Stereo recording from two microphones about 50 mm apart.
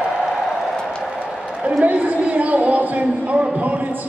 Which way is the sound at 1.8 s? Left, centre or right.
Right.